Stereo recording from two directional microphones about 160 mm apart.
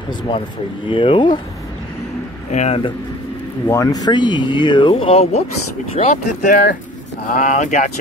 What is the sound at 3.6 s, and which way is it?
Speech, 20° left (ahead or behind).